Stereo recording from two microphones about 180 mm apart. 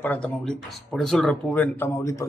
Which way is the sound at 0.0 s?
5° left (ahead or behind).